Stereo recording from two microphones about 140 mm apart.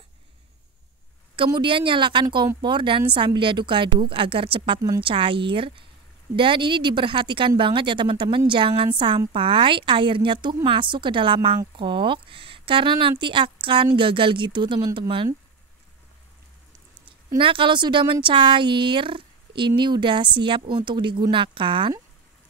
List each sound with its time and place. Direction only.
1.3 s speech: 35° right (ahead or behind)
17.4 s speech: 35° right (ahead or behind)